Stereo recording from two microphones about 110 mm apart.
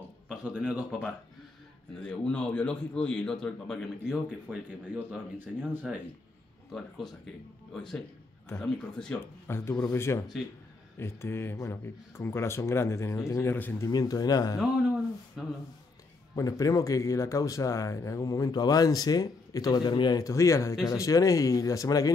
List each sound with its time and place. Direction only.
0.3 s speech: 10° right (ahead or behind)
2.0 s a man's voice: 10° left (ahead or behind)
4.5 s speech: 15° right (ahead or behind)
7.7 s a man's voice: 5° left (ahead or behind)
9.5 s speech: 25° left (ahead or behind)
13.8 s speech: 35° left (ahead or behind)
15.4 s speech: centre (ahead or behind)
16.3 s speech: 30° left (ahead or behind)